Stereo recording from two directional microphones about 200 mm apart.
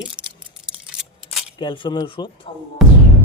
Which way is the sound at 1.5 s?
25° left (ahead or behind).